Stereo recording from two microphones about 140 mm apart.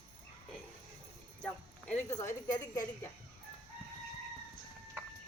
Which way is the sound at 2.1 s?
20° left (ahead or behind).